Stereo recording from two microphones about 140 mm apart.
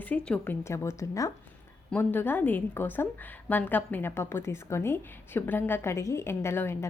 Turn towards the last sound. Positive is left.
turn(degrees=20)  # may be behind; listen again after turning